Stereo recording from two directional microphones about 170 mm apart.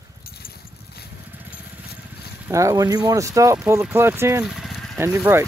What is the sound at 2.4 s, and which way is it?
Speech, 20° right (ahead or behind).